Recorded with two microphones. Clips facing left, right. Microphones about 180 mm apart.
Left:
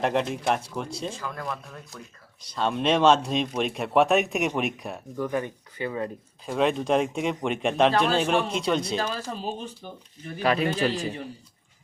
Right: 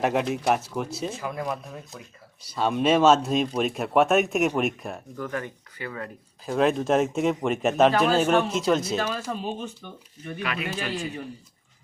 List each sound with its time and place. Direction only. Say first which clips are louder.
0.0 s speech: right 1 dB; 5° right (ahead or behind)
5.1 s speech: left 6 dB; 15° left (ahead or behind)
6.4 s speech: right 2 dB; centre (ahead or behind)
9.0 s speech: right 1 dB; 35° left (ahead or behind)